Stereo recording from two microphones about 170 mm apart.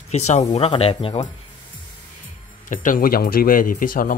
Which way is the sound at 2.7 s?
50° left (ahead or behind).